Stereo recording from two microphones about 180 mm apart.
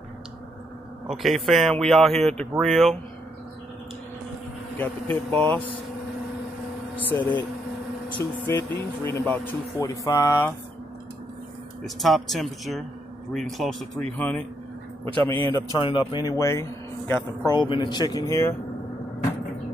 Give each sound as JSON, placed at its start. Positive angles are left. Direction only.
{"t": 1.0, "sound": "a man's voice", "side_deg": 0}
{"t": 4.7, "sound": "speech", "side_deg": 10}
{"t": 7.0, "sound": "speech", "side_deg": 10}
{"t": 11.8, "sound": "a man's voice", "side_deg": 0}
{"t": 15.5, "sound": "speech", "side_deg": 25}